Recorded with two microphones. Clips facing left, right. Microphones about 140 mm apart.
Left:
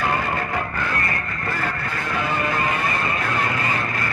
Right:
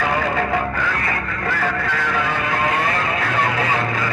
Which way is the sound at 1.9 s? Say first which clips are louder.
Right 3 dB; 90° right.